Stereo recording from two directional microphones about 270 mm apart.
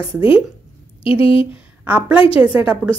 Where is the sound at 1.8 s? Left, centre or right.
Centre.